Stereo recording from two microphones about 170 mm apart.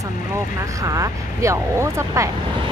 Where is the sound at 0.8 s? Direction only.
20° right (ahead or behind).